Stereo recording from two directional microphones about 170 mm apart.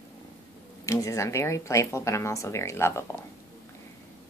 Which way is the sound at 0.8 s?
20° left (ahead or behind).